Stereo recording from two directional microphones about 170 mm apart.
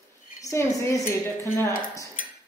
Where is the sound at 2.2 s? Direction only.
50° left (ahead or behind).